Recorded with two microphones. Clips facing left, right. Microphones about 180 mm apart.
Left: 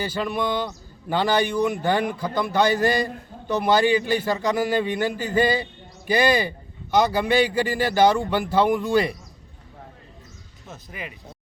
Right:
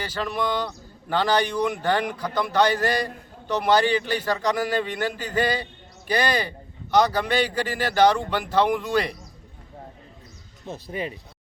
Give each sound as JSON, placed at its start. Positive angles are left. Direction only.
{"t": 0.0, "sound": "a man's voice", "side_deg": 10}
{"t": 10.7, "sound": "speech", "side_deg": -30}